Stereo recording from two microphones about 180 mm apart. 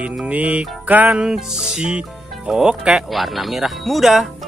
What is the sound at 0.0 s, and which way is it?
Music, 5° right (ahead or behind).